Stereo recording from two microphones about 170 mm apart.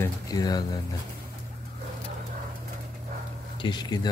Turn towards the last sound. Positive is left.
turn(degrees=25)  # may be behind; listen again after turning